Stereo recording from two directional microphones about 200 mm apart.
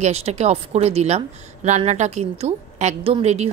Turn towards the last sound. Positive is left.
turn(degrees=-35)  # may be behind; listen again after turning